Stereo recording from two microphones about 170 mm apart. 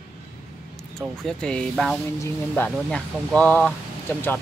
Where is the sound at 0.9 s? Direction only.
5° left (ahead or behind).